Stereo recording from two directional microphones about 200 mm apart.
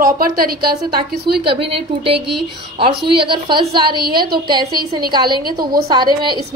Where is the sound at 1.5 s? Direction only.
25° right (ahead or behind).